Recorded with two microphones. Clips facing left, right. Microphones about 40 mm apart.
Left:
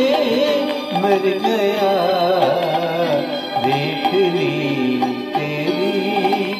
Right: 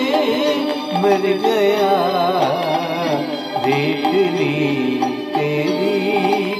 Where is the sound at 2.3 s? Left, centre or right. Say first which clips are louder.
Left 1 dB; centre.